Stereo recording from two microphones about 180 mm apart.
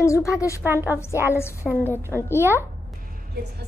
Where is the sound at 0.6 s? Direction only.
10° right (ahead or behind).